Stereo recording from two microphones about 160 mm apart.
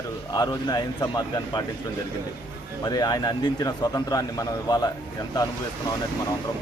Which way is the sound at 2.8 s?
25° left (ahead or behind).